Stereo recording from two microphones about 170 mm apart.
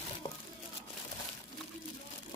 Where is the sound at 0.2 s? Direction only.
45° left (ahead or behind).